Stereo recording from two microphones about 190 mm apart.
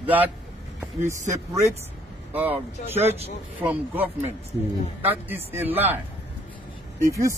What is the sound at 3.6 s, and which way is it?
A man's voice, 10° right (ahead or behind).